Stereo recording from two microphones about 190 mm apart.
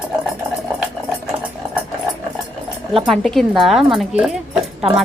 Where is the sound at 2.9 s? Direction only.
Centre (ahead or behind).